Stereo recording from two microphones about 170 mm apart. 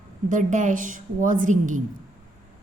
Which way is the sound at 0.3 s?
50° right (ahead or behind).